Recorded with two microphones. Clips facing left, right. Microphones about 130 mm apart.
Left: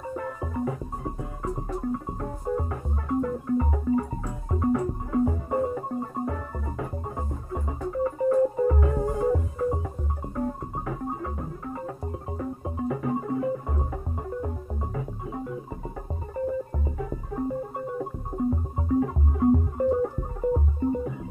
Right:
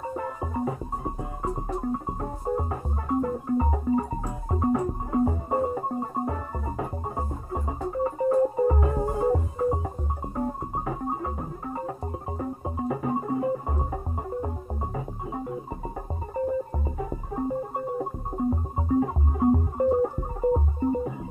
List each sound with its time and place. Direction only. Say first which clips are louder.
0.1 s music: left 2 dB; 25° right (ahead or behind)
16.8 s music: right 1 dB; 25° right (ahead or behind)